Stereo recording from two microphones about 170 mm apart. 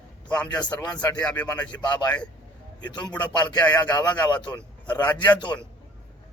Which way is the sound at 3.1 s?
25° left (ahead or behind).